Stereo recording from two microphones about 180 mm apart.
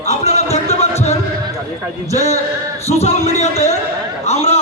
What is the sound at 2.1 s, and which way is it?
A man's voice, 35° left (ahead or behind).